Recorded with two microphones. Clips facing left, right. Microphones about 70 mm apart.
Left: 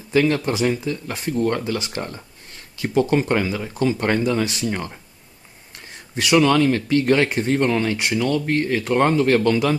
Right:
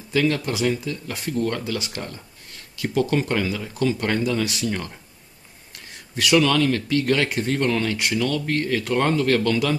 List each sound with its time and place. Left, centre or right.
0.1 s speech: left
6.1 s speech: left